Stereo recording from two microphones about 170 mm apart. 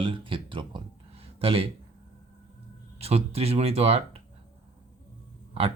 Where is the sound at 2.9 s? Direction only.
35° right (ahead or behind).